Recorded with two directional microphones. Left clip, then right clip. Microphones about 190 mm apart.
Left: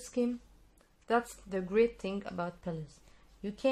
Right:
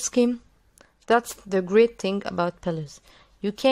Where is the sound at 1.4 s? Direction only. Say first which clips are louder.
Right 10 dB; 45° right (ahead or behind).